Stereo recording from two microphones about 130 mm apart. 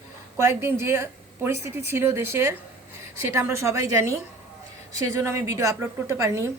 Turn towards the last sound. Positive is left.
turn(degrees=-20)  # may be behind; listen again after turning